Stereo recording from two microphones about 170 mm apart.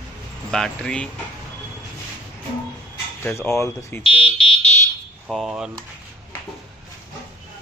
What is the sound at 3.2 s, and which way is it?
Speech, 15° left (ahead or behind).